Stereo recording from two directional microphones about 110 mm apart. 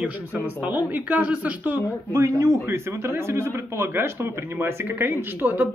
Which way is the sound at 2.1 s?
30° right (ahead or behind).